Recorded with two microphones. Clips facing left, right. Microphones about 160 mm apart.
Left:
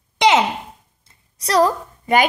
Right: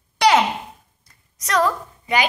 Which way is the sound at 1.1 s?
30° left (ahead or behind).